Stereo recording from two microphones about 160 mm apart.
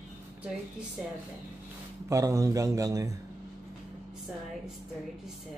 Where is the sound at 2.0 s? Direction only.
20° right (ahead or behind).